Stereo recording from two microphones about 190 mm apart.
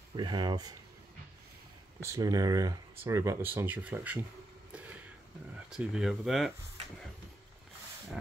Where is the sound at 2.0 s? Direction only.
15° right (ahead or behind).